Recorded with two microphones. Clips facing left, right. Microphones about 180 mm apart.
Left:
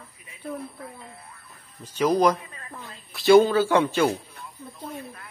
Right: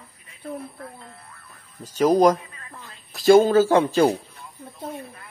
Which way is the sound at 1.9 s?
40° right (ahead or behind).